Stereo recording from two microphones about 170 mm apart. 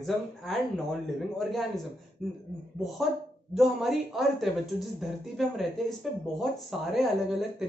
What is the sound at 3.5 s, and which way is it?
Speech, centre (ahead or behind).